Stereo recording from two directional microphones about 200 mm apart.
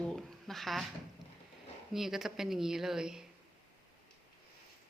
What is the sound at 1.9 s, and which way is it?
Speech, centre (ahead or behind).